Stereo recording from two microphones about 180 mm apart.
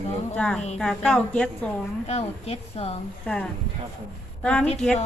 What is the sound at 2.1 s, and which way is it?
Speech, 35° left (ahead or behind).